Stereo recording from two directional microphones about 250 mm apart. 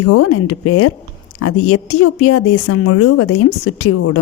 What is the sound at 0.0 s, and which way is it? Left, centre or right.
A woman's voice, left.